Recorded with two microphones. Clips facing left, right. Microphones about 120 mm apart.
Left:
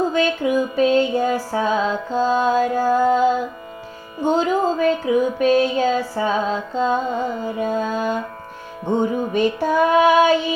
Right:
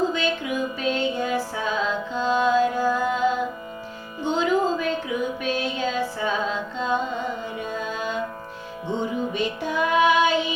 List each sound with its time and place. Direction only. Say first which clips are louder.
0.1 s music: left 7 dB; 40° left (ahead or behind)
4.2 s music: left 4 dB; 40° left (ahead or behind)